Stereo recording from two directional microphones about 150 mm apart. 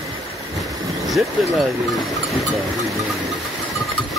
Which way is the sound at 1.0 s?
Centre (ahead or behind).